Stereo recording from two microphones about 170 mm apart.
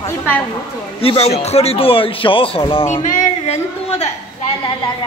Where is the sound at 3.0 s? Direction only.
45° left (ahead or behind).